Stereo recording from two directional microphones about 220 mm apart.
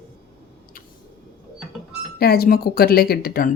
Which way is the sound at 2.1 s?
45° left (ahead or behind).